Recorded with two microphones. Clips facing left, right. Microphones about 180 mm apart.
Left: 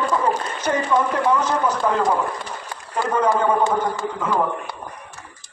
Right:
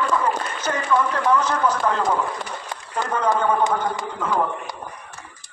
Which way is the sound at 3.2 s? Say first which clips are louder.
Even; 15° right (ahead or behind).